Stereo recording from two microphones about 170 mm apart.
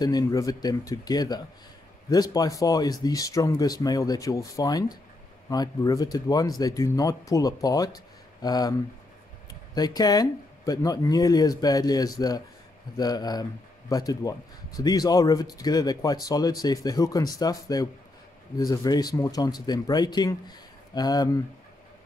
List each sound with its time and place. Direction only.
0.0 s speech: 20° left (ahead or behind)
9.8 s speech: 25° left (ahead or behind)